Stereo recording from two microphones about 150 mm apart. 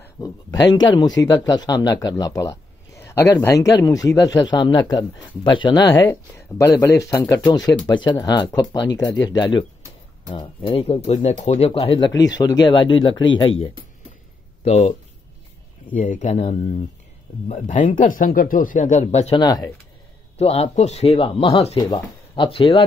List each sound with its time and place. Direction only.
0.2 s speech: 25° left (ahead or behind)
12.1 s speech: 25° left (ahead or behind)
14.6 s speech: 45° left (ahead or behind)
19.4 s speech: 25° left (ahead or behind)
20.3 s speech: 45° left (ahead or behind)